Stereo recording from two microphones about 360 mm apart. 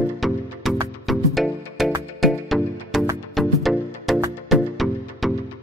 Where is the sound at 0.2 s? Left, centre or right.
Centre.